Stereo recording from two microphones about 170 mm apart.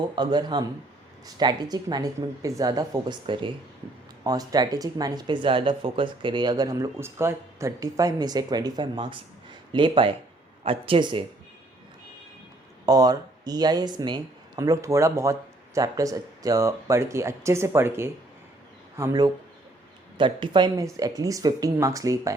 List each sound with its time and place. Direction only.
0.2 s speech: 25° right (ahead or behind)
12.8 s speech: 20° right (ahead or behind)